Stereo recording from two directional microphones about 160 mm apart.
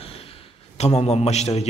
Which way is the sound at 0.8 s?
40° left (ahead or behind).